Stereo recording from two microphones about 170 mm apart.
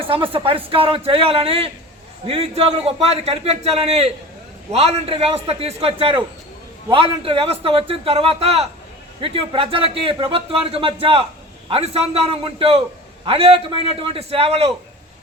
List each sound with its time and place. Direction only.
0.1 s a man's voice: 30° right (ahead or behind)